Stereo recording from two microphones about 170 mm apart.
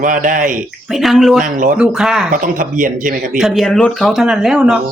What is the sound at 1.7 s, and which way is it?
Speech, 5° right (ahead or behind).